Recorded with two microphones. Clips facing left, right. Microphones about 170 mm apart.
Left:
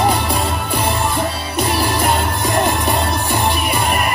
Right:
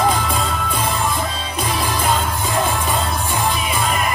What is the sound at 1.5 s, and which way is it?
Music, 60° left (ahead or behind).